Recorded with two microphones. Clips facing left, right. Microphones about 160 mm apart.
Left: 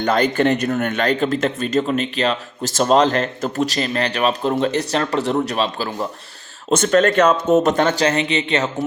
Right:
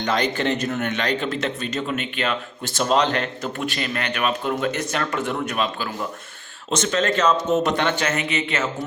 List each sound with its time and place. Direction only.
0.0 s speech: 55° left (ahead or behind); by 6.1 s 35° left (ahead or behind)
6.7 s speech: 50° left (ahead or behind); by 8.7 s 30° left (ahead or behind)